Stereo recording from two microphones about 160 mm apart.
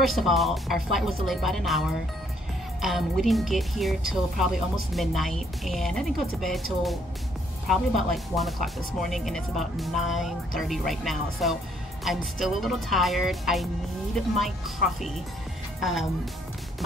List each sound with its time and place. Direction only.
0.0 s a woman's voice: centre (ahead or behind)
2.8 s a woman's voice: centre (ahead or behind)